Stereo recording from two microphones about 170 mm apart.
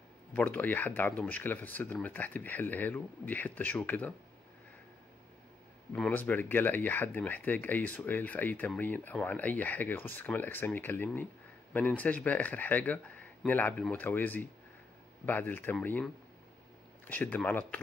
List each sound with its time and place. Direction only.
0.3 s speech: 10° left (ahead or behind)
5.9 s speech: 5° left (ahead or behind)
17.1 s speech: 10° left (ahead or behind)